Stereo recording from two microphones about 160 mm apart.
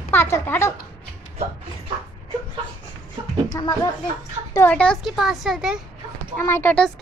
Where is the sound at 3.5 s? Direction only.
25° left (ahead or behind).